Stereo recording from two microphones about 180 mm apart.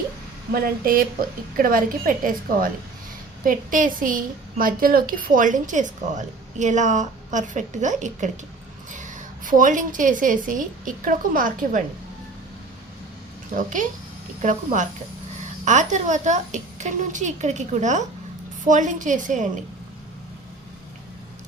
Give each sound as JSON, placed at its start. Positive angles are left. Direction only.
{"t": 0.5, "sound": "a woman's voice", "side_deg": -55}
{"t": 13.6, "sound": "a woman's voice", "side_deg": -45}